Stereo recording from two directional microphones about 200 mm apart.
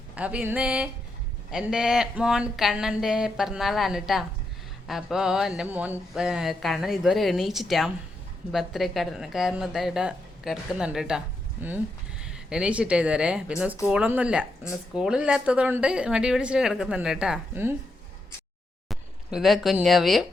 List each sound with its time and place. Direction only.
0.2 s speech: 5° right (ahead or behind)
12.2 s speech: 5° right (ahead or behind)
18.9 s speech: centre (ahead or behind)